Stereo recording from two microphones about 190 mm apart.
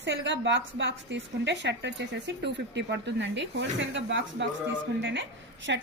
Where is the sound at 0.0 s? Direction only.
70° right (ahead or behind).